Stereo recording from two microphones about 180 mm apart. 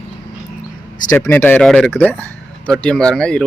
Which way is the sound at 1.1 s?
10° left (ahead or behind).